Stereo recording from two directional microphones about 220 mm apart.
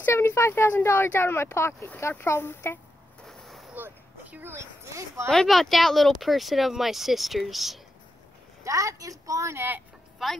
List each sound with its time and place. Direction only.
0.0 s speech: 10° left (ahead or behind)
3.3 s a sound: centre (ahead or behind)
5.3 s speech: centre (ahead or behind)
8.6 s a woman's voice: 15° right (ahead or behind)
10.1 s speech: centre (ahead or behind)